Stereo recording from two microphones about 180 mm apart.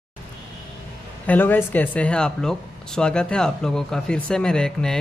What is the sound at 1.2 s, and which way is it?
Speech, 10° left (ahead or behind).